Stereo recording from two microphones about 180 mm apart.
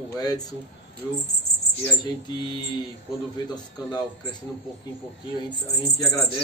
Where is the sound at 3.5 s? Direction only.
25° left (ahead or behind).